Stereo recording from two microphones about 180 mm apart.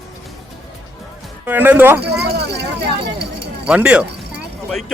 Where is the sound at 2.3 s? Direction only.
70° right (ahead or behind).